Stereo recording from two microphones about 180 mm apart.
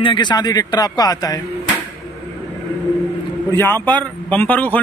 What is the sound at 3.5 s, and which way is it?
Speech, 10° left (ahead or behind).